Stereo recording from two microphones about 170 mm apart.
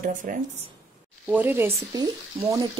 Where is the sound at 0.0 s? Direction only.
50° right (ahead or behind).